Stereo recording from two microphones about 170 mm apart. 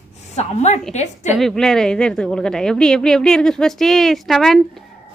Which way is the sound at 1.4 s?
Centre (ahead or behind).